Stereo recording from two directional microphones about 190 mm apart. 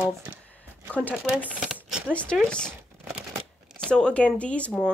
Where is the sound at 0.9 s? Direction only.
10° left (ahead or behind).